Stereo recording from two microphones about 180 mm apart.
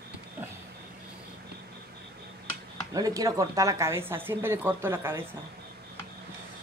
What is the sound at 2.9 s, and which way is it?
Speech, 20° right (ahead or behind).